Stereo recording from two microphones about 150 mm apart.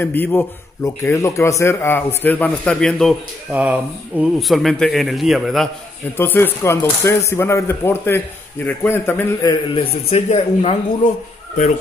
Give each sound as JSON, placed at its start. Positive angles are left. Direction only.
{"t": 0.0, "sound": "speech", "side_deg": 15}
{"t": 3.5, "sound": "speech", "side_deg": -10}
{"t": 6.1, "sound": "speech", "side_deg": 15}
{"t": 9.5, "sound": "a man's voice", "side_deg": 40}